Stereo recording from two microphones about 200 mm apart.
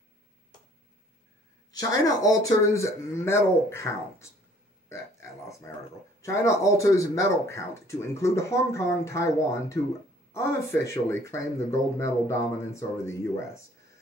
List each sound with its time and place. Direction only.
1.7 s speech: 15° left (ahead or behind)
4.8 s burping: 15° left (ahead or behind)
6.2 s speech: 15° left (ahead or behind)